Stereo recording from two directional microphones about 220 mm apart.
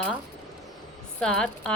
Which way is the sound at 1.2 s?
5° left (ahead or behind).